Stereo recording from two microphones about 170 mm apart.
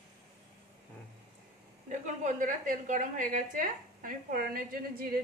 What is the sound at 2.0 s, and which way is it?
A woman's voice, 50° right (ahead or behind).